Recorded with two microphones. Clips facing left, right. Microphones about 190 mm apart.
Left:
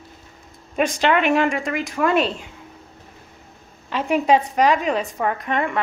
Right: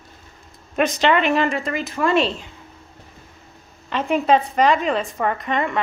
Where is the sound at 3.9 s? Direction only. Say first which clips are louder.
Even; 10° left (ahead or behind).